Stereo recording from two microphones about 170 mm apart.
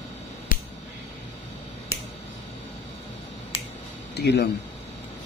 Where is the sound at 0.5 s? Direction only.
50° left (ahead or behind).